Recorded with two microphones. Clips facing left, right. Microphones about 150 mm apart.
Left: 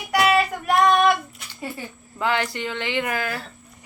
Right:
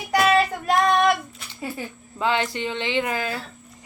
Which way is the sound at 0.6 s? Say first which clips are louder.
Left 1 dB; 30° right (ahead or behind).